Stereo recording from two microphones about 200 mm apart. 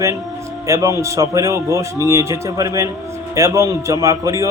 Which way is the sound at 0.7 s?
15° right (ahead or behind).